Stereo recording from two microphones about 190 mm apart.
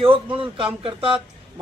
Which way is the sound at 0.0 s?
25° right (ahead or behind).